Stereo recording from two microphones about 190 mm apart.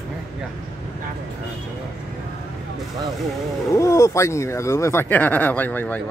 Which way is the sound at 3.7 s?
15° left (ahead or behind).